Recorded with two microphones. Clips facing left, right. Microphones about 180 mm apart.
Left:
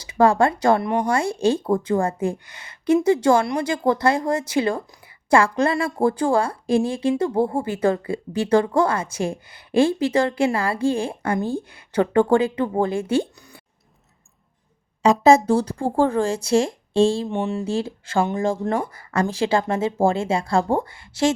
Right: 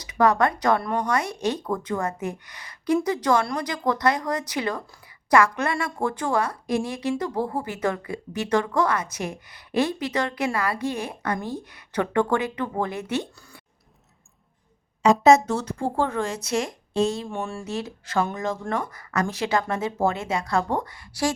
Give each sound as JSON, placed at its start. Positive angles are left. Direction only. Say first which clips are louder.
{"t": 0.0, "sound": "a woman's voice", "louder": "left 3 dB", "side_deg": 30}
{"t": 15.0, "sound": "speech", "louder": "left 2 dB", "side_deg": 0}
{"t": 15.3, "sound": "a woman's voice", "louder": "left 4 dB", "side_deg": 30}